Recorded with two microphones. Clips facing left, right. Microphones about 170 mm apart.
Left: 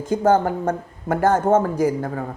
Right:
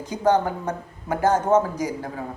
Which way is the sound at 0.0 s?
50° left (ahead or behind).